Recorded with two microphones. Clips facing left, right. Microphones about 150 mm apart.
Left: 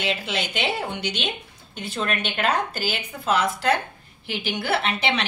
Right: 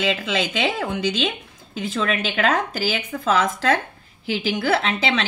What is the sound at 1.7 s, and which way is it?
A woman's voice, 90° right.